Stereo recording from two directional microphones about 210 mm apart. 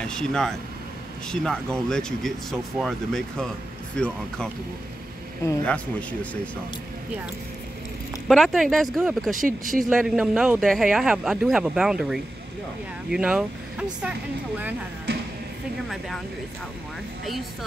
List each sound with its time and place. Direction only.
0.0 s a man's voice: 5° left (ahead or behind)
5.7 s speech: 5° left (ahead or behind)
8.3 s a man's voice: centre (ahead or behind)
9.3 s speech: 40° right (ahead or behind)
9.8 s a man's voice: centre (ahead or behind)
17.2 s speech: centre (ahead or behind)